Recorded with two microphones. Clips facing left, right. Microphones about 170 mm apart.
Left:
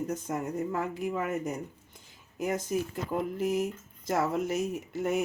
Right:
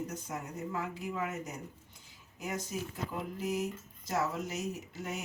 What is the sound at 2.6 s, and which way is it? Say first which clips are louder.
Speech: left 7 dB; 55° left (ahead or behind).